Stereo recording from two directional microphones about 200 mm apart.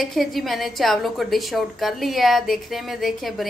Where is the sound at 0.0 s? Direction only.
Centre (ahead or behind).